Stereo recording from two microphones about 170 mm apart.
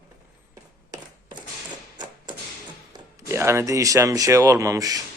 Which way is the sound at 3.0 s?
15° right (ahead or behind).